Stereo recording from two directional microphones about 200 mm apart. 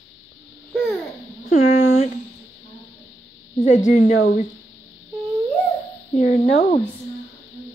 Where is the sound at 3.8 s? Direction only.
45° left (ahead or behind).